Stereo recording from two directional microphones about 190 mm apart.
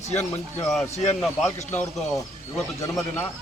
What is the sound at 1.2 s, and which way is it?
Speech, centre (ahead or behind).